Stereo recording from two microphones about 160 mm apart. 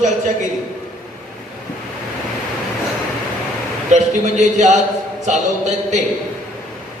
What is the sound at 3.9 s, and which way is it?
A man's voice, 45° right (ahead or behind).